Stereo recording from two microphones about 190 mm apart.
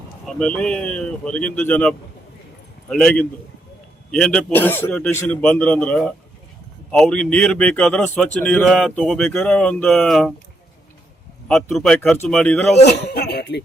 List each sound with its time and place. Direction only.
0.3 s a man's voice: 5° left (ahead or behind)
11.4 s a man's voice: 5° left (ahead or behind)
12.8 s speech: 60° left (ahead or behind)